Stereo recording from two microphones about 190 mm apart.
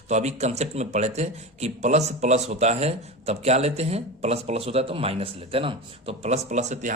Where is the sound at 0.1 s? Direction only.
35° right (ahead or behind).